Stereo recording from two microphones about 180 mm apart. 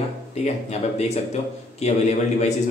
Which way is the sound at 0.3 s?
35° left (ahead or behind).